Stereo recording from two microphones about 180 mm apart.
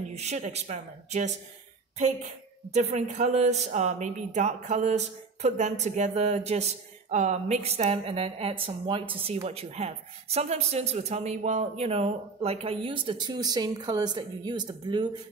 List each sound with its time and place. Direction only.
0.1 s speech: 35° right (ahead or behind)
2.7 s speech: 40° right (ahead or behind); by 15.0 s 25° right (ahead or behind)